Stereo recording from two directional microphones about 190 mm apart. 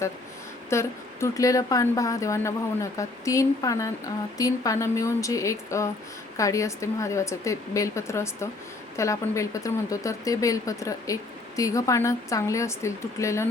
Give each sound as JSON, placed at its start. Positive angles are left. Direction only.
{"t": 0.7, "sound": "speech", "side_deg": 15}